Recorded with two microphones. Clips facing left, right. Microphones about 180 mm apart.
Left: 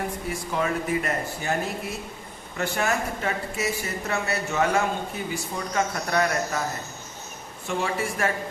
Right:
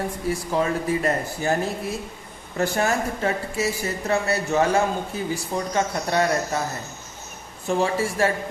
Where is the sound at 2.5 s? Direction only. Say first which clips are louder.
Right 3 dB; 35° right (ahead or behind).